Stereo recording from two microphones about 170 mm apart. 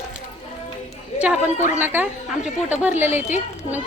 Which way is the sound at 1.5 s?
45° left (ahead or behind).